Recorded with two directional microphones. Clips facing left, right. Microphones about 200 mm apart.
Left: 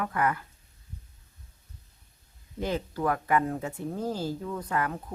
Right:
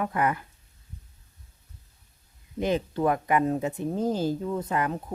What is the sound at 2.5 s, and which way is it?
Speech, 20° right (ahead or behind).